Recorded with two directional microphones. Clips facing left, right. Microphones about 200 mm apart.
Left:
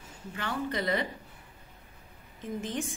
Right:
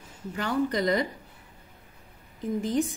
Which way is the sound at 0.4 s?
40° right (ahead or behind).